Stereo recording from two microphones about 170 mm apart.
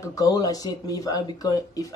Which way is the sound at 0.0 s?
20° left (ahead or behind).